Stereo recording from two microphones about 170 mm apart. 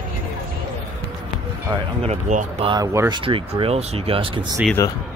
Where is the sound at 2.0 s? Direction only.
45° right (ahead or behind).